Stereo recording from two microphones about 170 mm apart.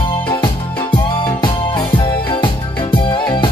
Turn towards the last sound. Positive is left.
turn(degrees=30)  # may be behind; listen again after turning